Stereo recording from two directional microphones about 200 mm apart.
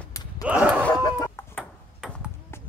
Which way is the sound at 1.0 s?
20° left (ahead or behind).